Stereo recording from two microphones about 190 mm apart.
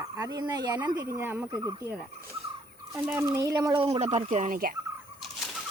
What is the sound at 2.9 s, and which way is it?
Speech, 10° right (ahead or behind).